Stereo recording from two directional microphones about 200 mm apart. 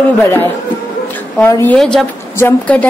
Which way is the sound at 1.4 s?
10° left (ahead or behind).